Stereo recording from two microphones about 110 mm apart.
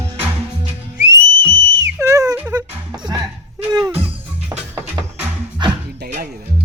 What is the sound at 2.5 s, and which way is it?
Music, 35° right (ahead or behind).